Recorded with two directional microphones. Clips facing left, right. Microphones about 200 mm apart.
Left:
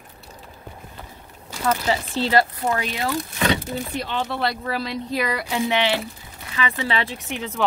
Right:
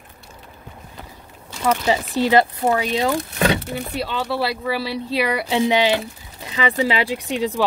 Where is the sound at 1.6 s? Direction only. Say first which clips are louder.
Right 3 dB; 15° right (ahead or behind).